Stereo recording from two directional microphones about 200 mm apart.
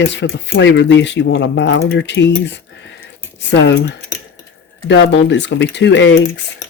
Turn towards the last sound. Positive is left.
turn(degrees=65)  # may be behind; listen again after turning